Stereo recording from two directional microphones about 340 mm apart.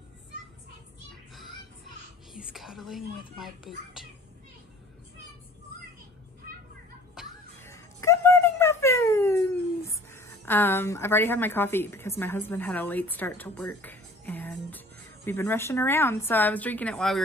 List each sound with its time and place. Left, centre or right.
2.3 s whispering: centre
7.2 s music: centre
15.2 s a woman's voice: centre